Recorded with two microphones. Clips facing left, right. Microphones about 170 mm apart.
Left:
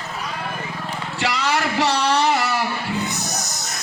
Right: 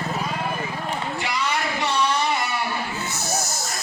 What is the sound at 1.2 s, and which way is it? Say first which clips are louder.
Music: left 7 dB; 80° left.